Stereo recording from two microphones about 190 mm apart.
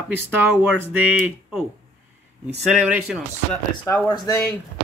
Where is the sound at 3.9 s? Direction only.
15° left (ahead or behind).